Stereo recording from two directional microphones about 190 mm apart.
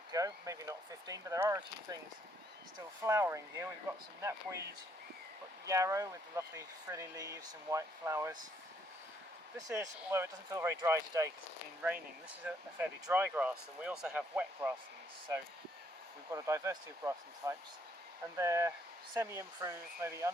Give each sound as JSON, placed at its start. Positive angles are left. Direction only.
{"t": 0.1, "sound": "speech", "side_deg": -20}
{"t": 3.0, "sound": "speech", "side_deg": -15}
{"t": 5.6, "sound": "speech", "side_deg": -15}
{"t": 9.6, "sound": "speech", "side_deg": -15}
{"t": 12.4, "sound": "speech", "side_deg": -10}
{"t": 16.3, "sound": "speech", "side_deg": -15}